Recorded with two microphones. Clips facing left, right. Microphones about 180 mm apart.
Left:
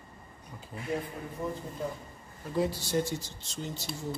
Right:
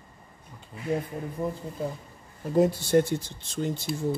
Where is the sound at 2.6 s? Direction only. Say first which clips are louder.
Right 8 dB; 50° right (ahead or behind).